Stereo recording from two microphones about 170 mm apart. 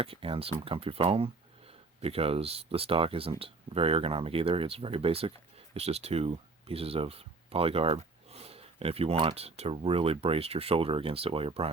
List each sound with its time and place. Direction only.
0.0 s speech: 35° right (ahead or behind)